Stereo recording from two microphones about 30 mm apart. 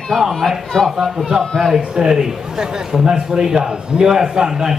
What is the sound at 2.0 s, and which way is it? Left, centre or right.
Speech, centre.